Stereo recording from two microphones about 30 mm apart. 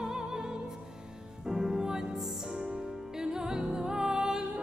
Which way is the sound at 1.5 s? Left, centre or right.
Right.